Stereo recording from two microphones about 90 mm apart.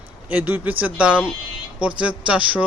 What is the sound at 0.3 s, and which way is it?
Speech, 20° right (ahead or behind).